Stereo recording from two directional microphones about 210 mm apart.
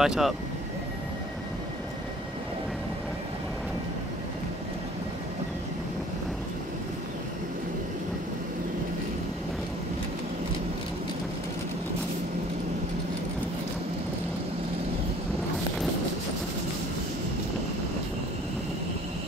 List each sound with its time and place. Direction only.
0.0 s speech: 5° right (ahead or behind)